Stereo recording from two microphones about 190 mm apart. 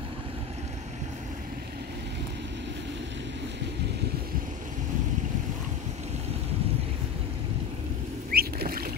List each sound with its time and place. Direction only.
8.3 s rowboat: 55° right (ahead or behind)